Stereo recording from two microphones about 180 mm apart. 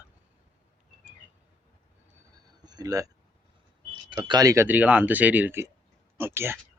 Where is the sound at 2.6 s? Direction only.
20° right (ahead or behind).